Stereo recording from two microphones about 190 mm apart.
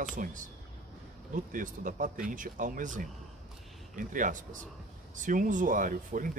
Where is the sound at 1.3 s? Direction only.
45° right (ahead or behind).